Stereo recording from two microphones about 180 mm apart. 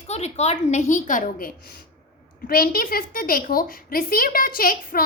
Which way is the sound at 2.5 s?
55° left (ahead or behind).